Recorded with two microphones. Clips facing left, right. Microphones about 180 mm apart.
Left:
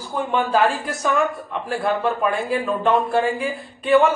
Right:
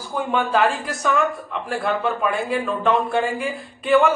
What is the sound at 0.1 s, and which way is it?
Speech, centre (ahead or behind).